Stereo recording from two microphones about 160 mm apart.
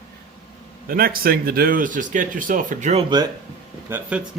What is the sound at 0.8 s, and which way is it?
Speech, 65° right (ahead or behind).